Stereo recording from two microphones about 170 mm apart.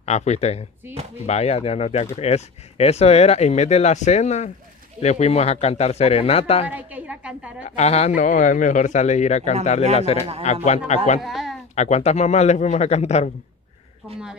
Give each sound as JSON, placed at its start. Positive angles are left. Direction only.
{"t": 0.0, "sound": "speech", "side_deg": 40}
{"t": 6.7, "sound": "a woman's voice", "side_deg": -10}
{"t": 7.6, "sound": "speech", "side_deg": 40}
{"t": 11.1, "sound": "speech", "side_deg": 0}
{"t": 11.7, "sound": "speech", "side_deg": 40}